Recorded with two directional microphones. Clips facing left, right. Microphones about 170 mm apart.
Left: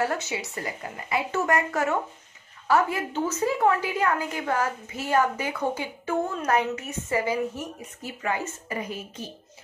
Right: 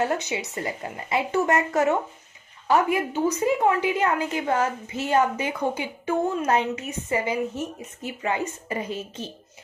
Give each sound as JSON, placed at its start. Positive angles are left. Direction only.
{"t": 0.0, "sound": "a woman's voice", "side_deg": -20}